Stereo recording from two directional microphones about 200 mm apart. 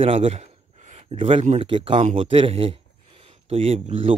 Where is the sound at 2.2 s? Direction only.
25° right (ahead or behind).